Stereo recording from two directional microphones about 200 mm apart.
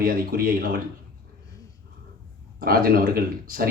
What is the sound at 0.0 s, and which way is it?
Speech, 45° right (ahead or behind).